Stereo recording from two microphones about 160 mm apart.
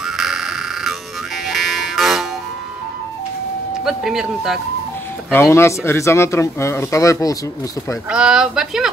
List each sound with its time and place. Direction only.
0.0 s a sound: centre (ahead or behind)
3.8 s speech: 5° right (ahead or behind)
5.3 s speech: 15° left (ahead or behind)
8.1 s speech: 5° right (ahead or behind)